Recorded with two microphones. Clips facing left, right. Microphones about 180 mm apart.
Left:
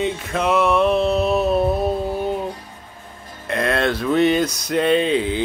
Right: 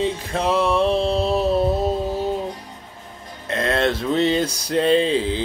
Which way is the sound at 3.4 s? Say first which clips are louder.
Even; 25° right (ahead or behind).